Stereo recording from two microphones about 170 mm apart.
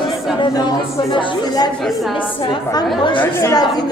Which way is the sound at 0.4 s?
25° left (ahead or behind).